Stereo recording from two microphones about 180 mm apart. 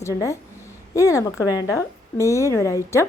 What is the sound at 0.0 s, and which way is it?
A woman's voice, 15° left (ahead or behind).